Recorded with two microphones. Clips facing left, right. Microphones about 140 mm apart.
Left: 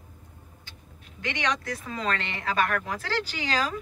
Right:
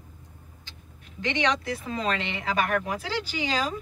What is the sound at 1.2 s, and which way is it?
Speech, 30° right (ahead or behind).